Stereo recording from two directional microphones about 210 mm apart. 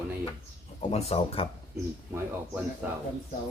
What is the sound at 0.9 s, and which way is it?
Speech, 30° left (ahead or behind).